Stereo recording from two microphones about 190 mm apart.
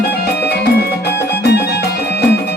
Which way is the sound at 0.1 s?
60° left (ahead or behind).